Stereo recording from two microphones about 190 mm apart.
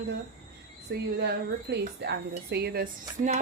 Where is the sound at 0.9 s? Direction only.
60° right (ahead or behind).